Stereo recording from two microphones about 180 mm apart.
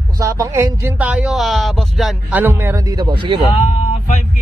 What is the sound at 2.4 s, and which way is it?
Speech, 10° right (ahead or behind).